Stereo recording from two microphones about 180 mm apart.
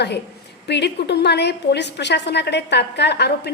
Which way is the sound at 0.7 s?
70° left (ahead or behind).